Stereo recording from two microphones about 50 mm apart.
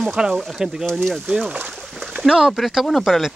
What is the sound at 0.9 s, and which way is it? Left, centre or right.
Speech, centre.